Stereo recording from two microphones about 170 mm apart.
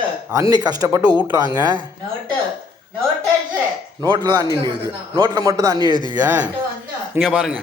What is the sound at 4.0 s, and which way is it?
Speech, 25° right (ahead or behind).